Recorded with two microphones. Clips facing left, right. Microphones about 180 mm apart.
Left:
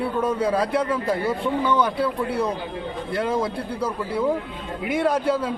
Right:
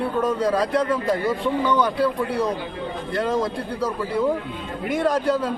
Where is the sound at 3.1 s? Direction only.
5° left (ahead or behind).